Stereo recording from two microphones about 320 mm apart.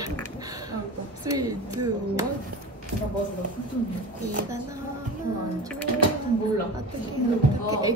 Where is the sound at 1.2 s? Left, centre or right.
Centre.